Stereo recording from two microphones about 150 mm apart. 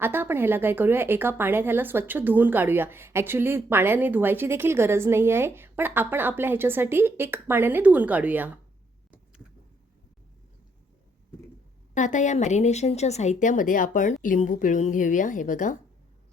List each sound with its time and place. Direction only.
0.0 s speech: 15° right (ahead or behind)
11.9 s speech: 55° left (ahead or behind)